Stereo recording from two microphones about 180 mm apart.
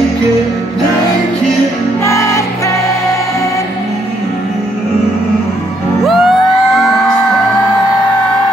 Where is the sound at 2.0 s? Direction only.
15° left (ahead or behind).